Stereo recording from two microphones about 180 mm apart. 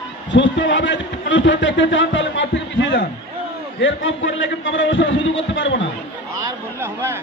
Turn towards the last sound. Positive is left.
turn(degrees=-15)  # may be behind; listen again after turning